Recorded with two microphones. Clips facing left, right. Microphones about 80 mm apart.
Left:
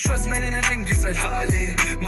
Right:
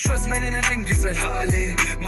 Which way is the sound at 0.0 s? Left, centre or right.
Centre.